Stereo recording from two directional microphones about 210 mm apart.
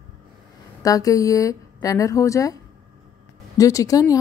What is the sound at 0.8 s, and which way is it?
A woman's voice, 15° left (ahead or behind).